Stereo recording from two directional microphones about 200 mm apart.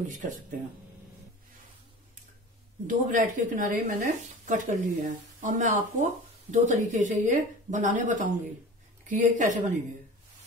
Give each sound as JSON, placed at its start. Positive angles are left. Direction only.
{"t": 0.1, "sound": "speech", "side_deg": -40}
{"t": 2.9, "sound": "speech", "side_deg": -40}